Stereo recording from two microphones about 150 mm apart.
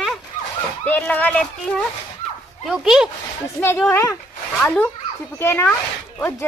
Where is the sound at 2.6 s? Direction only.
5° right (ahead or behind).